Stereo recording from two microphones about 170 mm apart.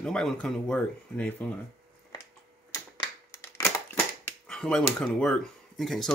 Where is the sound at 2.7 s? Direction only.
20° left (ahead or behind).